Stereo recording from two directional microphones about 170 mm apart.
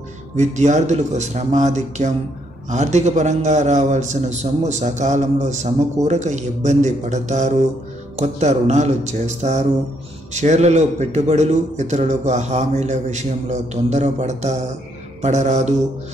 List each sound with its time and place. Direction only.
0.4 s a man's voice: 45° right (ahead or behind)